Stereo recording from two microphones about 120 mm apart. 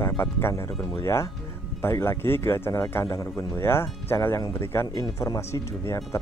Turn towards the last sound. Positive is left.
turn(degrees=25)  # may be behind; listen again after turning